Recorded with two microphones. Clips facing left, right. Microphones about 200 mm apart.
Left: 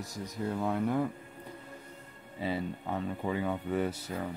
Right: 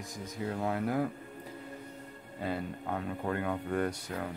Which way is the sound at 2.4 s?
5° left (ahead or behind).